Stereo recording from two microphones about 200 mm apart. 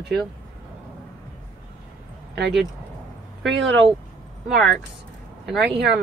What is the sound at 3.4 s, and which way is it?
Speech, 65° right (ahead or behind).